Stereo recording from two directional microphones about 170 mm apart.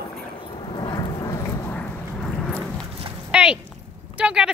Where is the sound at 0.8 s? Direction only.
20° left (ahead or behind).